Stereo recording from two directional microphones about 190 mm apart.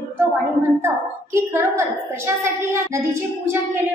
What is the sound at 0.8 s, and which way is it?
A woman's voice, 15° right (ahead or behind).